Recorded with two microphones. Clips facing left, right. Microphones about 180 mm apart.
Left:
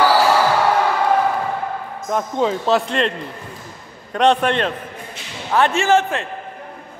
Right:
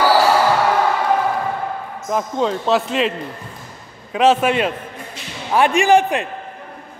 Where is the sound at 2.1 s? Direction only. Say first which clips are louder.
Even; centre (ahead or behind).